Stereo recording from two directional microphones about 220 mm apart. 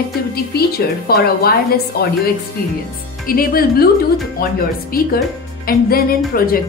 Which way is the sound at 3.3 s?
40° left (ahead or behind).